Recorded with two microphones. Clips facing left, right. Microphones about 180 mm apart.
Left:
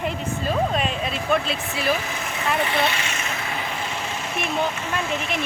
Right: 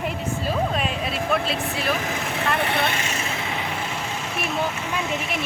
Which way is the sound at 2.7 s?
55° right (ahead or behind).